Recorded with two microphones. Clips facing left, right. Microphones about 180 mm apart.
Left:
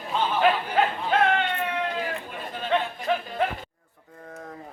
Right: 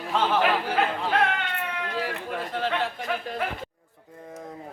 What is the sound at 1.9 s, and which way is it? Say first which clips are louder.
Speech: right 2 dB; 80° right.